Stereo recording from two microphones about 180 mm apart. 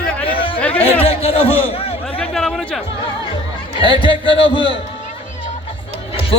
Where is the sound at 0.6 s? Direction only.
10° left (ahead or behind).